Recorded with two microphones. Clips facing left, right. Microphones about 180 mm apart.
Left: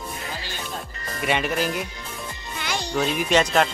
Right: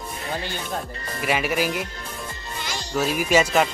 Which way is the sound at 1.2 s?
5° right (ahead or behind).